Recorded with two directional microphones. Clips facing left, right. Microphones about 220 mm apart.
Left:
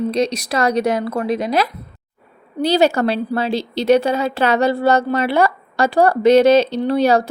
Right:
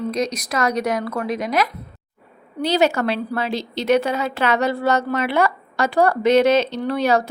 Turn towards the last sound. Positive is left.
turn(degrees=35)  # may be behind; listen again after turning